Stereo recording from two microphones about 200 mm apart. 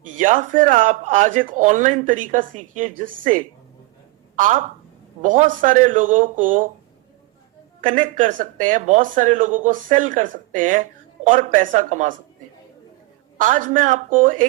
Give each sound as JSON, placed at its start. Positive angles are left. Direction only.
{"t": 0.2, "sound": "a woman's voice", "side_deg": -40}
{"t": 7.8, "sound": "speech", "side_deg": -40}
{"t": 13.4, "sound": "speech", "side_deg": -40}